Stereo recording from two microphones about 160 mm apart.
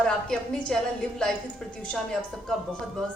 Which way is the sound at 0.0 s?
5° left (ahead or behind).